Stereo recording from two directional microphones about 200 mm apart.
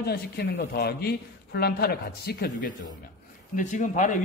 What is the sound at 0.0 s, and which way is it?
A man's voice, 50° left (ahead or behind).